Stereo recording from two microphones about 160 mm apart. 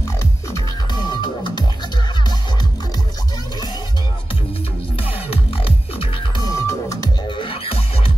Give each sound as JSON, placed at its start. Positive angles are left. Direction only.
{"t": 1.0, "sound": "music", "side_deg": 30}
{"t": 5.0, "sound": "music", "side_deg": 35}